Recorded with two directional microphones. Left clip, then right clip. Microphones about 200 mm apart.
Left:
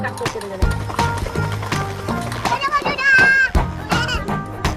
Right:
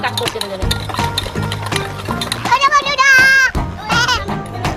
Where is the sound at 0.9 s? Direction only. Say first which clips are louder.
Left 2 dB; centre (ahead or behind).